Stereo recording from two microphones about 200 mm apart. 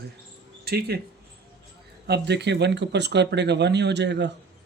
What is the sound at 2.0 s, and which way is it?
Speech, 55° right (ahead or behind).